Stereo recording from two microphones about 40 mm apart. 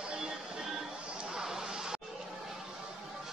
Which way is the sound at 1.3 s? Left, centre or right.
Centre.